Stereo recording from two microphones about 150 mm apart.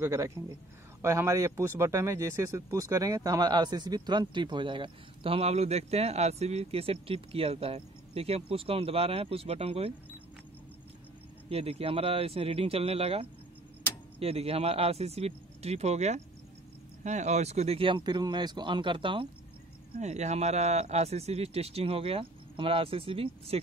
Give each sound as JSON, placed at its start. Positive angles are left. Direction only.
{"t": 0.0, "sound": "speech", "side_deg": -20}
{"t": 11.4, "sound": "speech", "side_deg": -40}
{"t": 20.0, "sound": "speech", "side_deg": -50}